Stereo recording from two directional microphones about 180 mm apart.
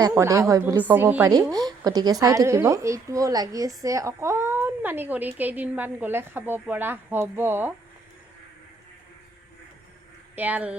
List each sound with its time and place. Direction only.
0.0 s a woman's voice: 15° right (ahead or behind)
10.3 s speech: 10° right (ahead or behind)